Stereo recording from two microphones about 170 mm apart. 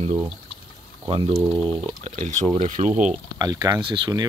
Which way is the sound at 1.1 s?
30° right (ahead or behind).